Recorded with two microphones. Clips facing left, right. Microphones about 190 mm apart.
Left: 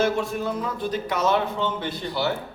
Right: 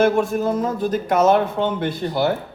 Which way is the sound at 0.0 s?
50° right (ahead or behind).